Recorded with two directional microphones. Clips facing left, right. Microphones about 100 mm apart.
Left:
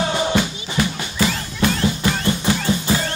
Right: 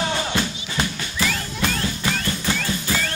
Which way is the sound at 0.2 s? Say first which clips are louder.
Left 5 dB; 25° left (ahead or behind).